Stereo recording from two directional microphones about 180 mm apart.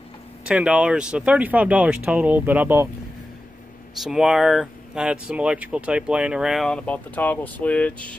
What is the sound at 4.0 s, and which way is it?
A man's voice, centre (ahead or behind).